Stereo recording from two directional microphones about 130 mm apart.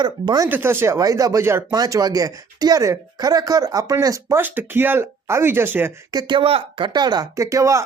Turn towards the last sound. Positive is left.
turn(degrees=-25)  # may be behind; listen again after turning